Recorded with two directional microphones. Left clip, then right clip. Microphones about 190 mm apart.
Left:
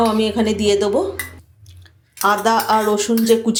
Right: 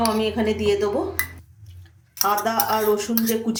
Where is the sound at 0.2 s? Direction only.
40° left (ahead or behind).